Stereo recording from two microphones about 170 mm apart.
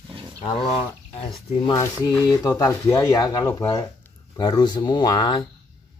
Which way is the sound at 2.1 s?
20° left (ahead or behind).